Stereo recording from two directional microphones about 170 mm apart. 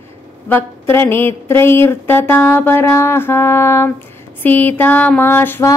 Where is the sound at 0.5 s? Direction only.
15° left (ahead or behind).